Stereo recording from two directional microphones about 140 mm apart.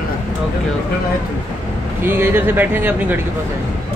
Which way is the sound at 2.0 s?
15° right (ahead or behind).